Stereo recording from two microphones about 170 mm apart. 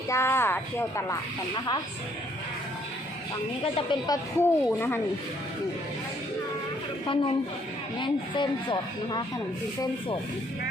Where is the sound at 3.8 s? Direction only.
25° left (ahead or behind).